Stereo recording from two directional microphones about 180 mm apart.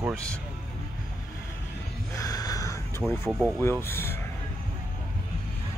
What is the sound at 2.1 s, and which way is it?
Gasp, 20° left (ahead or behind).